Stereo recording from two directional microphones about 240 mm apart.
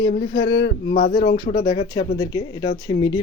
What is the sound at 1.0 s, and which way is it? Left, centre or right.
Speech, left.